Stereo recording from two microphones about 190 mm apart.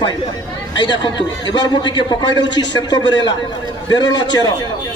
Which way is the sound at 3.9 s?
20° left (ahead or behind).